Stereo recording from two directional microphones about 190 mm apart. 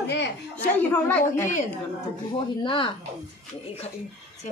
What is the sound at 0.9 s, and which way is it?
Speech, 10° left (ahead or behind).